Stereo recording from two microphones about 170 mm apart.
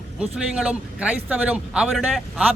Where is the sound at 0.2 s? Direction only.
5° right (ahead or behind).